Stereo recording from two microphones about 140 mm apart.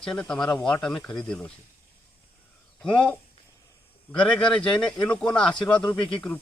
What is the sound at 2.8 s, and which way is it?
Speech, 5° left (ahead or behind).